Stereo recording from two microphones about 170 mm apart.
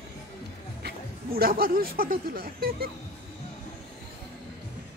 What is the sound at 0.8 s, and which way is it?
Speech, 65° right (ahead or behind).